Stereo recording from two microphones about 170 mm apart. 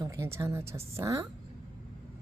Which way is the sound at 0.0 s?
15° right (ahead or behind).